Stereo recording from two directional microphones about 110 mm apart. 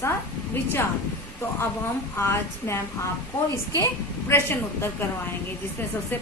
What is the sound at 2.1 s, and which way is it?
Speech, 25° left (ahead or behind).